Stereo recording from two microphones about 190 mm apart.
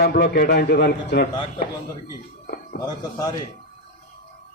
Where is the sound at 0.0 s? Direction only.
55° left (ahead or behind).